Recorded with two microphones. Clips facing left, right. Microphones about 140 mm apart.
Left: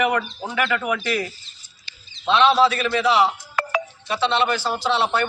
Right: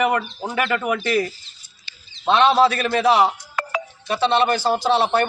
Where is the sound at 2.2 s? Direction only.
45° right (ahead or behind).